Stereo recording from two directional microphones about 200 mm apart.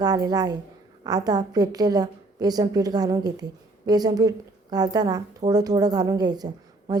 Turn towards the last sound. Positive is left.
turn(degrees=-20)  # may be behind; listen again after turning